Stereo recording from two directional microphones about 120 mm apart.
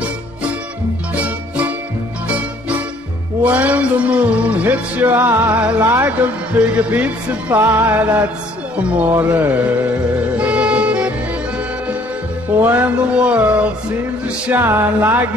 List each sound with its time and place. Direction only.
3.4 s music: 10° right (ahead or behind)
12.6 s music: 15° right (ahead or behind)